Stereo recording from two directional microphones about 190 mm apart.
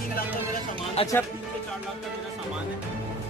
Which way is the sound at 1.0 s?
30° left (ahead or behind).